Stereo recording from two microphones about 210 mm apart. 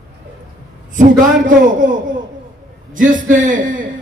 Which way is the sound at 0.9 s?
40° right (ahead or behind).